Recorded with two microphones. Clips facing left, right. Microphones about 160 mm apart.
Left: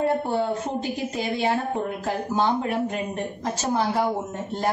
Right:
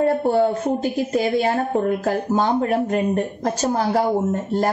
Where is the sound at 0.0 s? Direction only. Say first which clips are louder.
Right 6 dB; 45° right (ahead or behind).